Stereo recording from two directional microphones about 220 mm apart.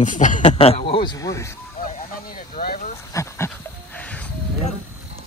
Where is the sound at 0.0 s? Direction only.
35° left (ahead or behind); by 1.5 s 15° left (ahead or behind).